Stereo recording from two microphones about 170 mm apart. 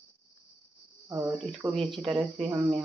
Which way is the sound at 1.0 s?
20° right (ahead or behind).